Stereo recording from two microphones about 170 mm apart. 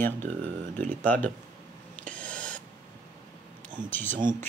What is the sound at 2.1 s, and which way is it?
Owl, 5° left (ahead or behind).